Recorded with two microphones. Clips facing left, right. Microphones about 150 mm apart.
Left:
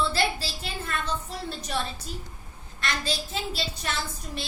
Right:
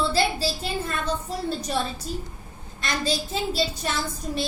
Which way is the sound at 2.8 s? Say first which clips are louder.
Right 4 dB; 40° right (ahead or behind).